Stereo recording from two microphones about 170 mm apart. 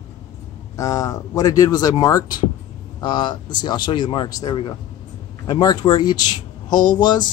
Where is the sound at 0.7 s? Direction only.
20° left (ahead or behind).